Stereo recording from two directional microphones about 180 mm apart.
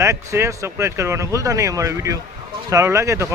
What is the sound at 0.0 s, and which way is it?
Speech, 15° right (ahead or behind).